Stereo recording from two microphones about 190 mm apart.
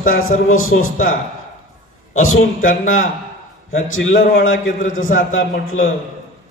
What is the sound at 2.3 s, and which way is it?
Speech, 45° left (ahead or behind).